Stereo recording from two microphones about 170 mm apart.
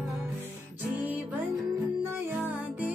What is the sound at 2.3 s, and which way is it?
Music, 10° right (ahead or behind).